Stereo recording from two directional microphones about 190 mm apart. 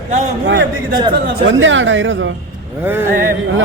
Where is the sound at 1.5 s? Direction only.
85° right.